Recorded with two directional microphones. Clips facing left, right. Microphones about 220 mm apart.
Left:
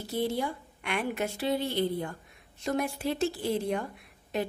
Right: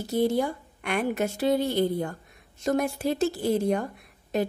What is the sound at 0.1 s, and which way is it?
A woman's voice, 45° right (ahead or behind).